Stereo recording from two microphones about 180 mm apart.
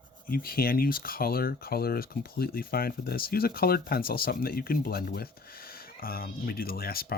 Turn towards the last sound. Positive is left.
turn(degrees=55)  # may be behind; listen again after turning